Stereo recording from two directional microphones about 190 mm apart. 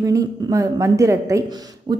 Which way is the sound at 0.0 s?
20° right (ahead or behind).